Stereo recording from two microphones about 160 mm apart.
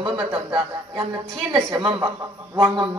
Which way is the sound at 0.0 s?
35° right (ahead or behind).